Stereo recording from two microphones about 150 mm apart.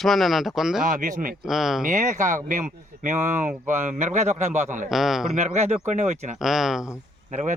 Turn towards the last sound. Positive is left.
turn(degrees=-55)  # may be behind; listen again after turning